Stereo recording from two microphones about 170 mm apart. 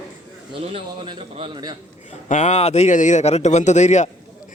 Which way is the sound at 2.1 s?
45° left (ahead or behind).